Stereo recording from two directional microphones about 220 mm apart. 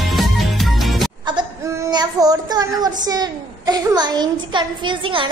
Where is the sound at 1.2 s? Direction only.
15° right (ahead or behind).